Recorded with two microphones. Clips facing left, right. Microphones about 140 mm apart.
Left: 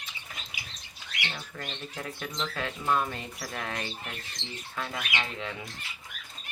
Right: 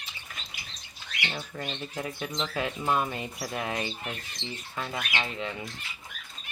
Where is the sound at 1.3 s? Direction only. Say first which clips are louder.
Right 4 dB; 10° right (ahead or behind).